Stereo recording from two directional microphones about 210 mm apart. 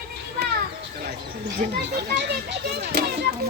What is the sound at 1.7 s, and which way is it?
A child's voice, 50° right (ahead or behind).